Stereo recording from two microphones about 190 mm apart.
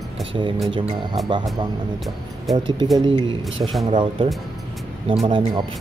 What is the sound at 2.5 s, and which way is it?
Speech, 25° right (ahead or behind).